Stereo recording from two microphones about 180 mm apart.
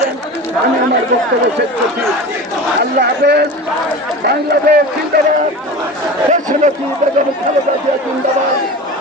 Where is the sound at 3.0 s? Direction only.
70° right (ahead or behind).